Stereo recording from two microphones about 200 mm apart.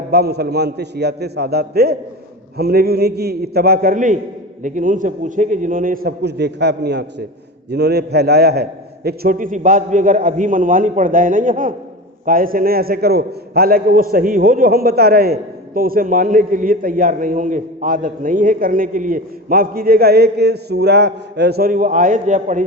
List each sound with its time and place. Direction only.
0.1 s a man's voice: 55° right (ahead or behind)